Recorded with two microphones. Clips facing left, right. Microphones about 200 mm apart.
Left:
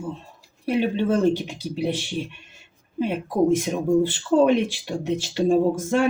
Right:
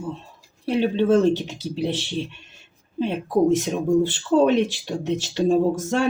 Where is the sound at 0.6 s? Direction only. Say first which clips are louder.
Right 2 dB; 15° left (ahead or behind).